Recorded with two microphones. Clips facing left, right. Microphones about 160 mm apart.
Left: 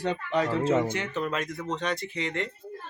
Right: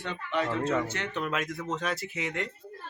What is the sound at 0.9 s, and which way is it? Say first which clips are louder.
Speech: left 4 dB; 10° left (ahead or behind).